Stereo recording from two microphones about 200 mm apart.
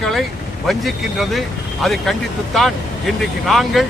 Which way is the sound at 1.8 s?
Centre (ahead or behind).